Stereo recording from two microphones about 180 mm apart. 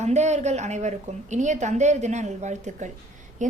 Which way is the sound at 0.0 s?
40° right (ahead or behind).